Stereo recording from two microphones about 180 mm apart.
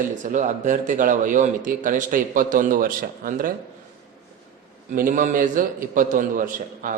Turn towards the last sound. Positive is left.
turn(degrees=-50)  # may be behind; listen again after turning